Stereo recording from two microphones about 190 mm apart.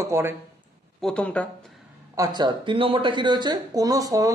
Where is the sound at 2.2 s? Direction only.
20° right (ahead or behind).